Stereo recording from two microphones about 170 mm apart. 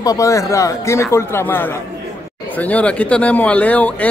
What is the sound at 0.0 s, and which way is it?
Speech, 20° left (ahead or behind).